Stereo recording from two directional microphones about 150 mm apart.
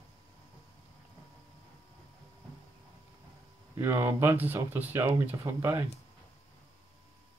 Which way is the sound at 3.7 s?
15° right (ahead or behind).